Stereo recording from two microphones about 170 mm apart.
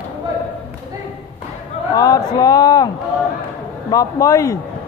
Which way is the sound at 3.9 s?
20° left (ahead or behind).